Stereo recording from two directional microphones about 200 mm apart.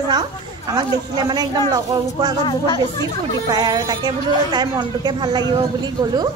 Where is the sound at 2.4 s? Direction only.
25° left (ahead or behind).